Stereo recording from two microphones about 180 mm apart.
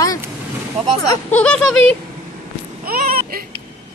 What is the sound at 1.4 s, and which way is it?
Speech, 5° left (ahead or behind).